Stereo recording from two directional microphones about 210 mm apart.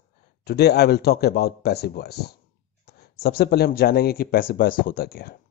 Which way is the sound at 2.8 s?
50° left (ahead or behind).